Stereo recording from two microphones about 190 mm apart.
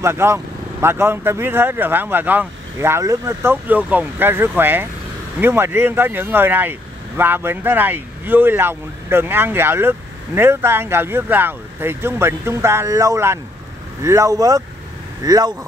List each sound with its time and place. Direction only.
0.0 s speech: 15° right (ahead or behind)